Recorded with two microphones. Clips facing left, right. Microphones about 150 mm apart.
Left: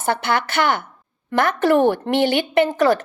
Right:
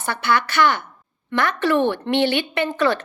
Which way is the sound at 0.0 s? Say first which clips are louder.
Left 1 dB; 50° left (ahead or behind).